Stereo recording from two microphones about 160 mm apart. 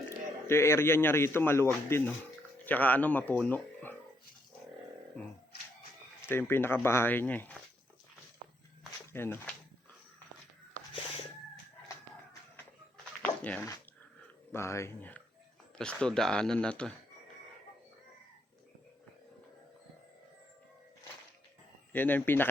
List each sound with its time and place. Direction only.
0.4 s a man's voice: 15° left (ahead or behind)
6.2 s a man's voice: 15° left (ahead or behind)
9.1 s a man's voice: 15° left (ahead or behind)
13.2 s a sound: 10° left (ahead or behind)
14.5 s a man's voice: 15° left (ahead or behind)
21.9 s a man's voice: 10° left (ahead or behind)